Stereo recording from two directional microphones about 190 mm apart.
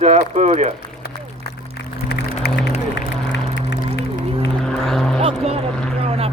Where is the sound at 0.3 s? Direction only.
35° right (ahead or behind).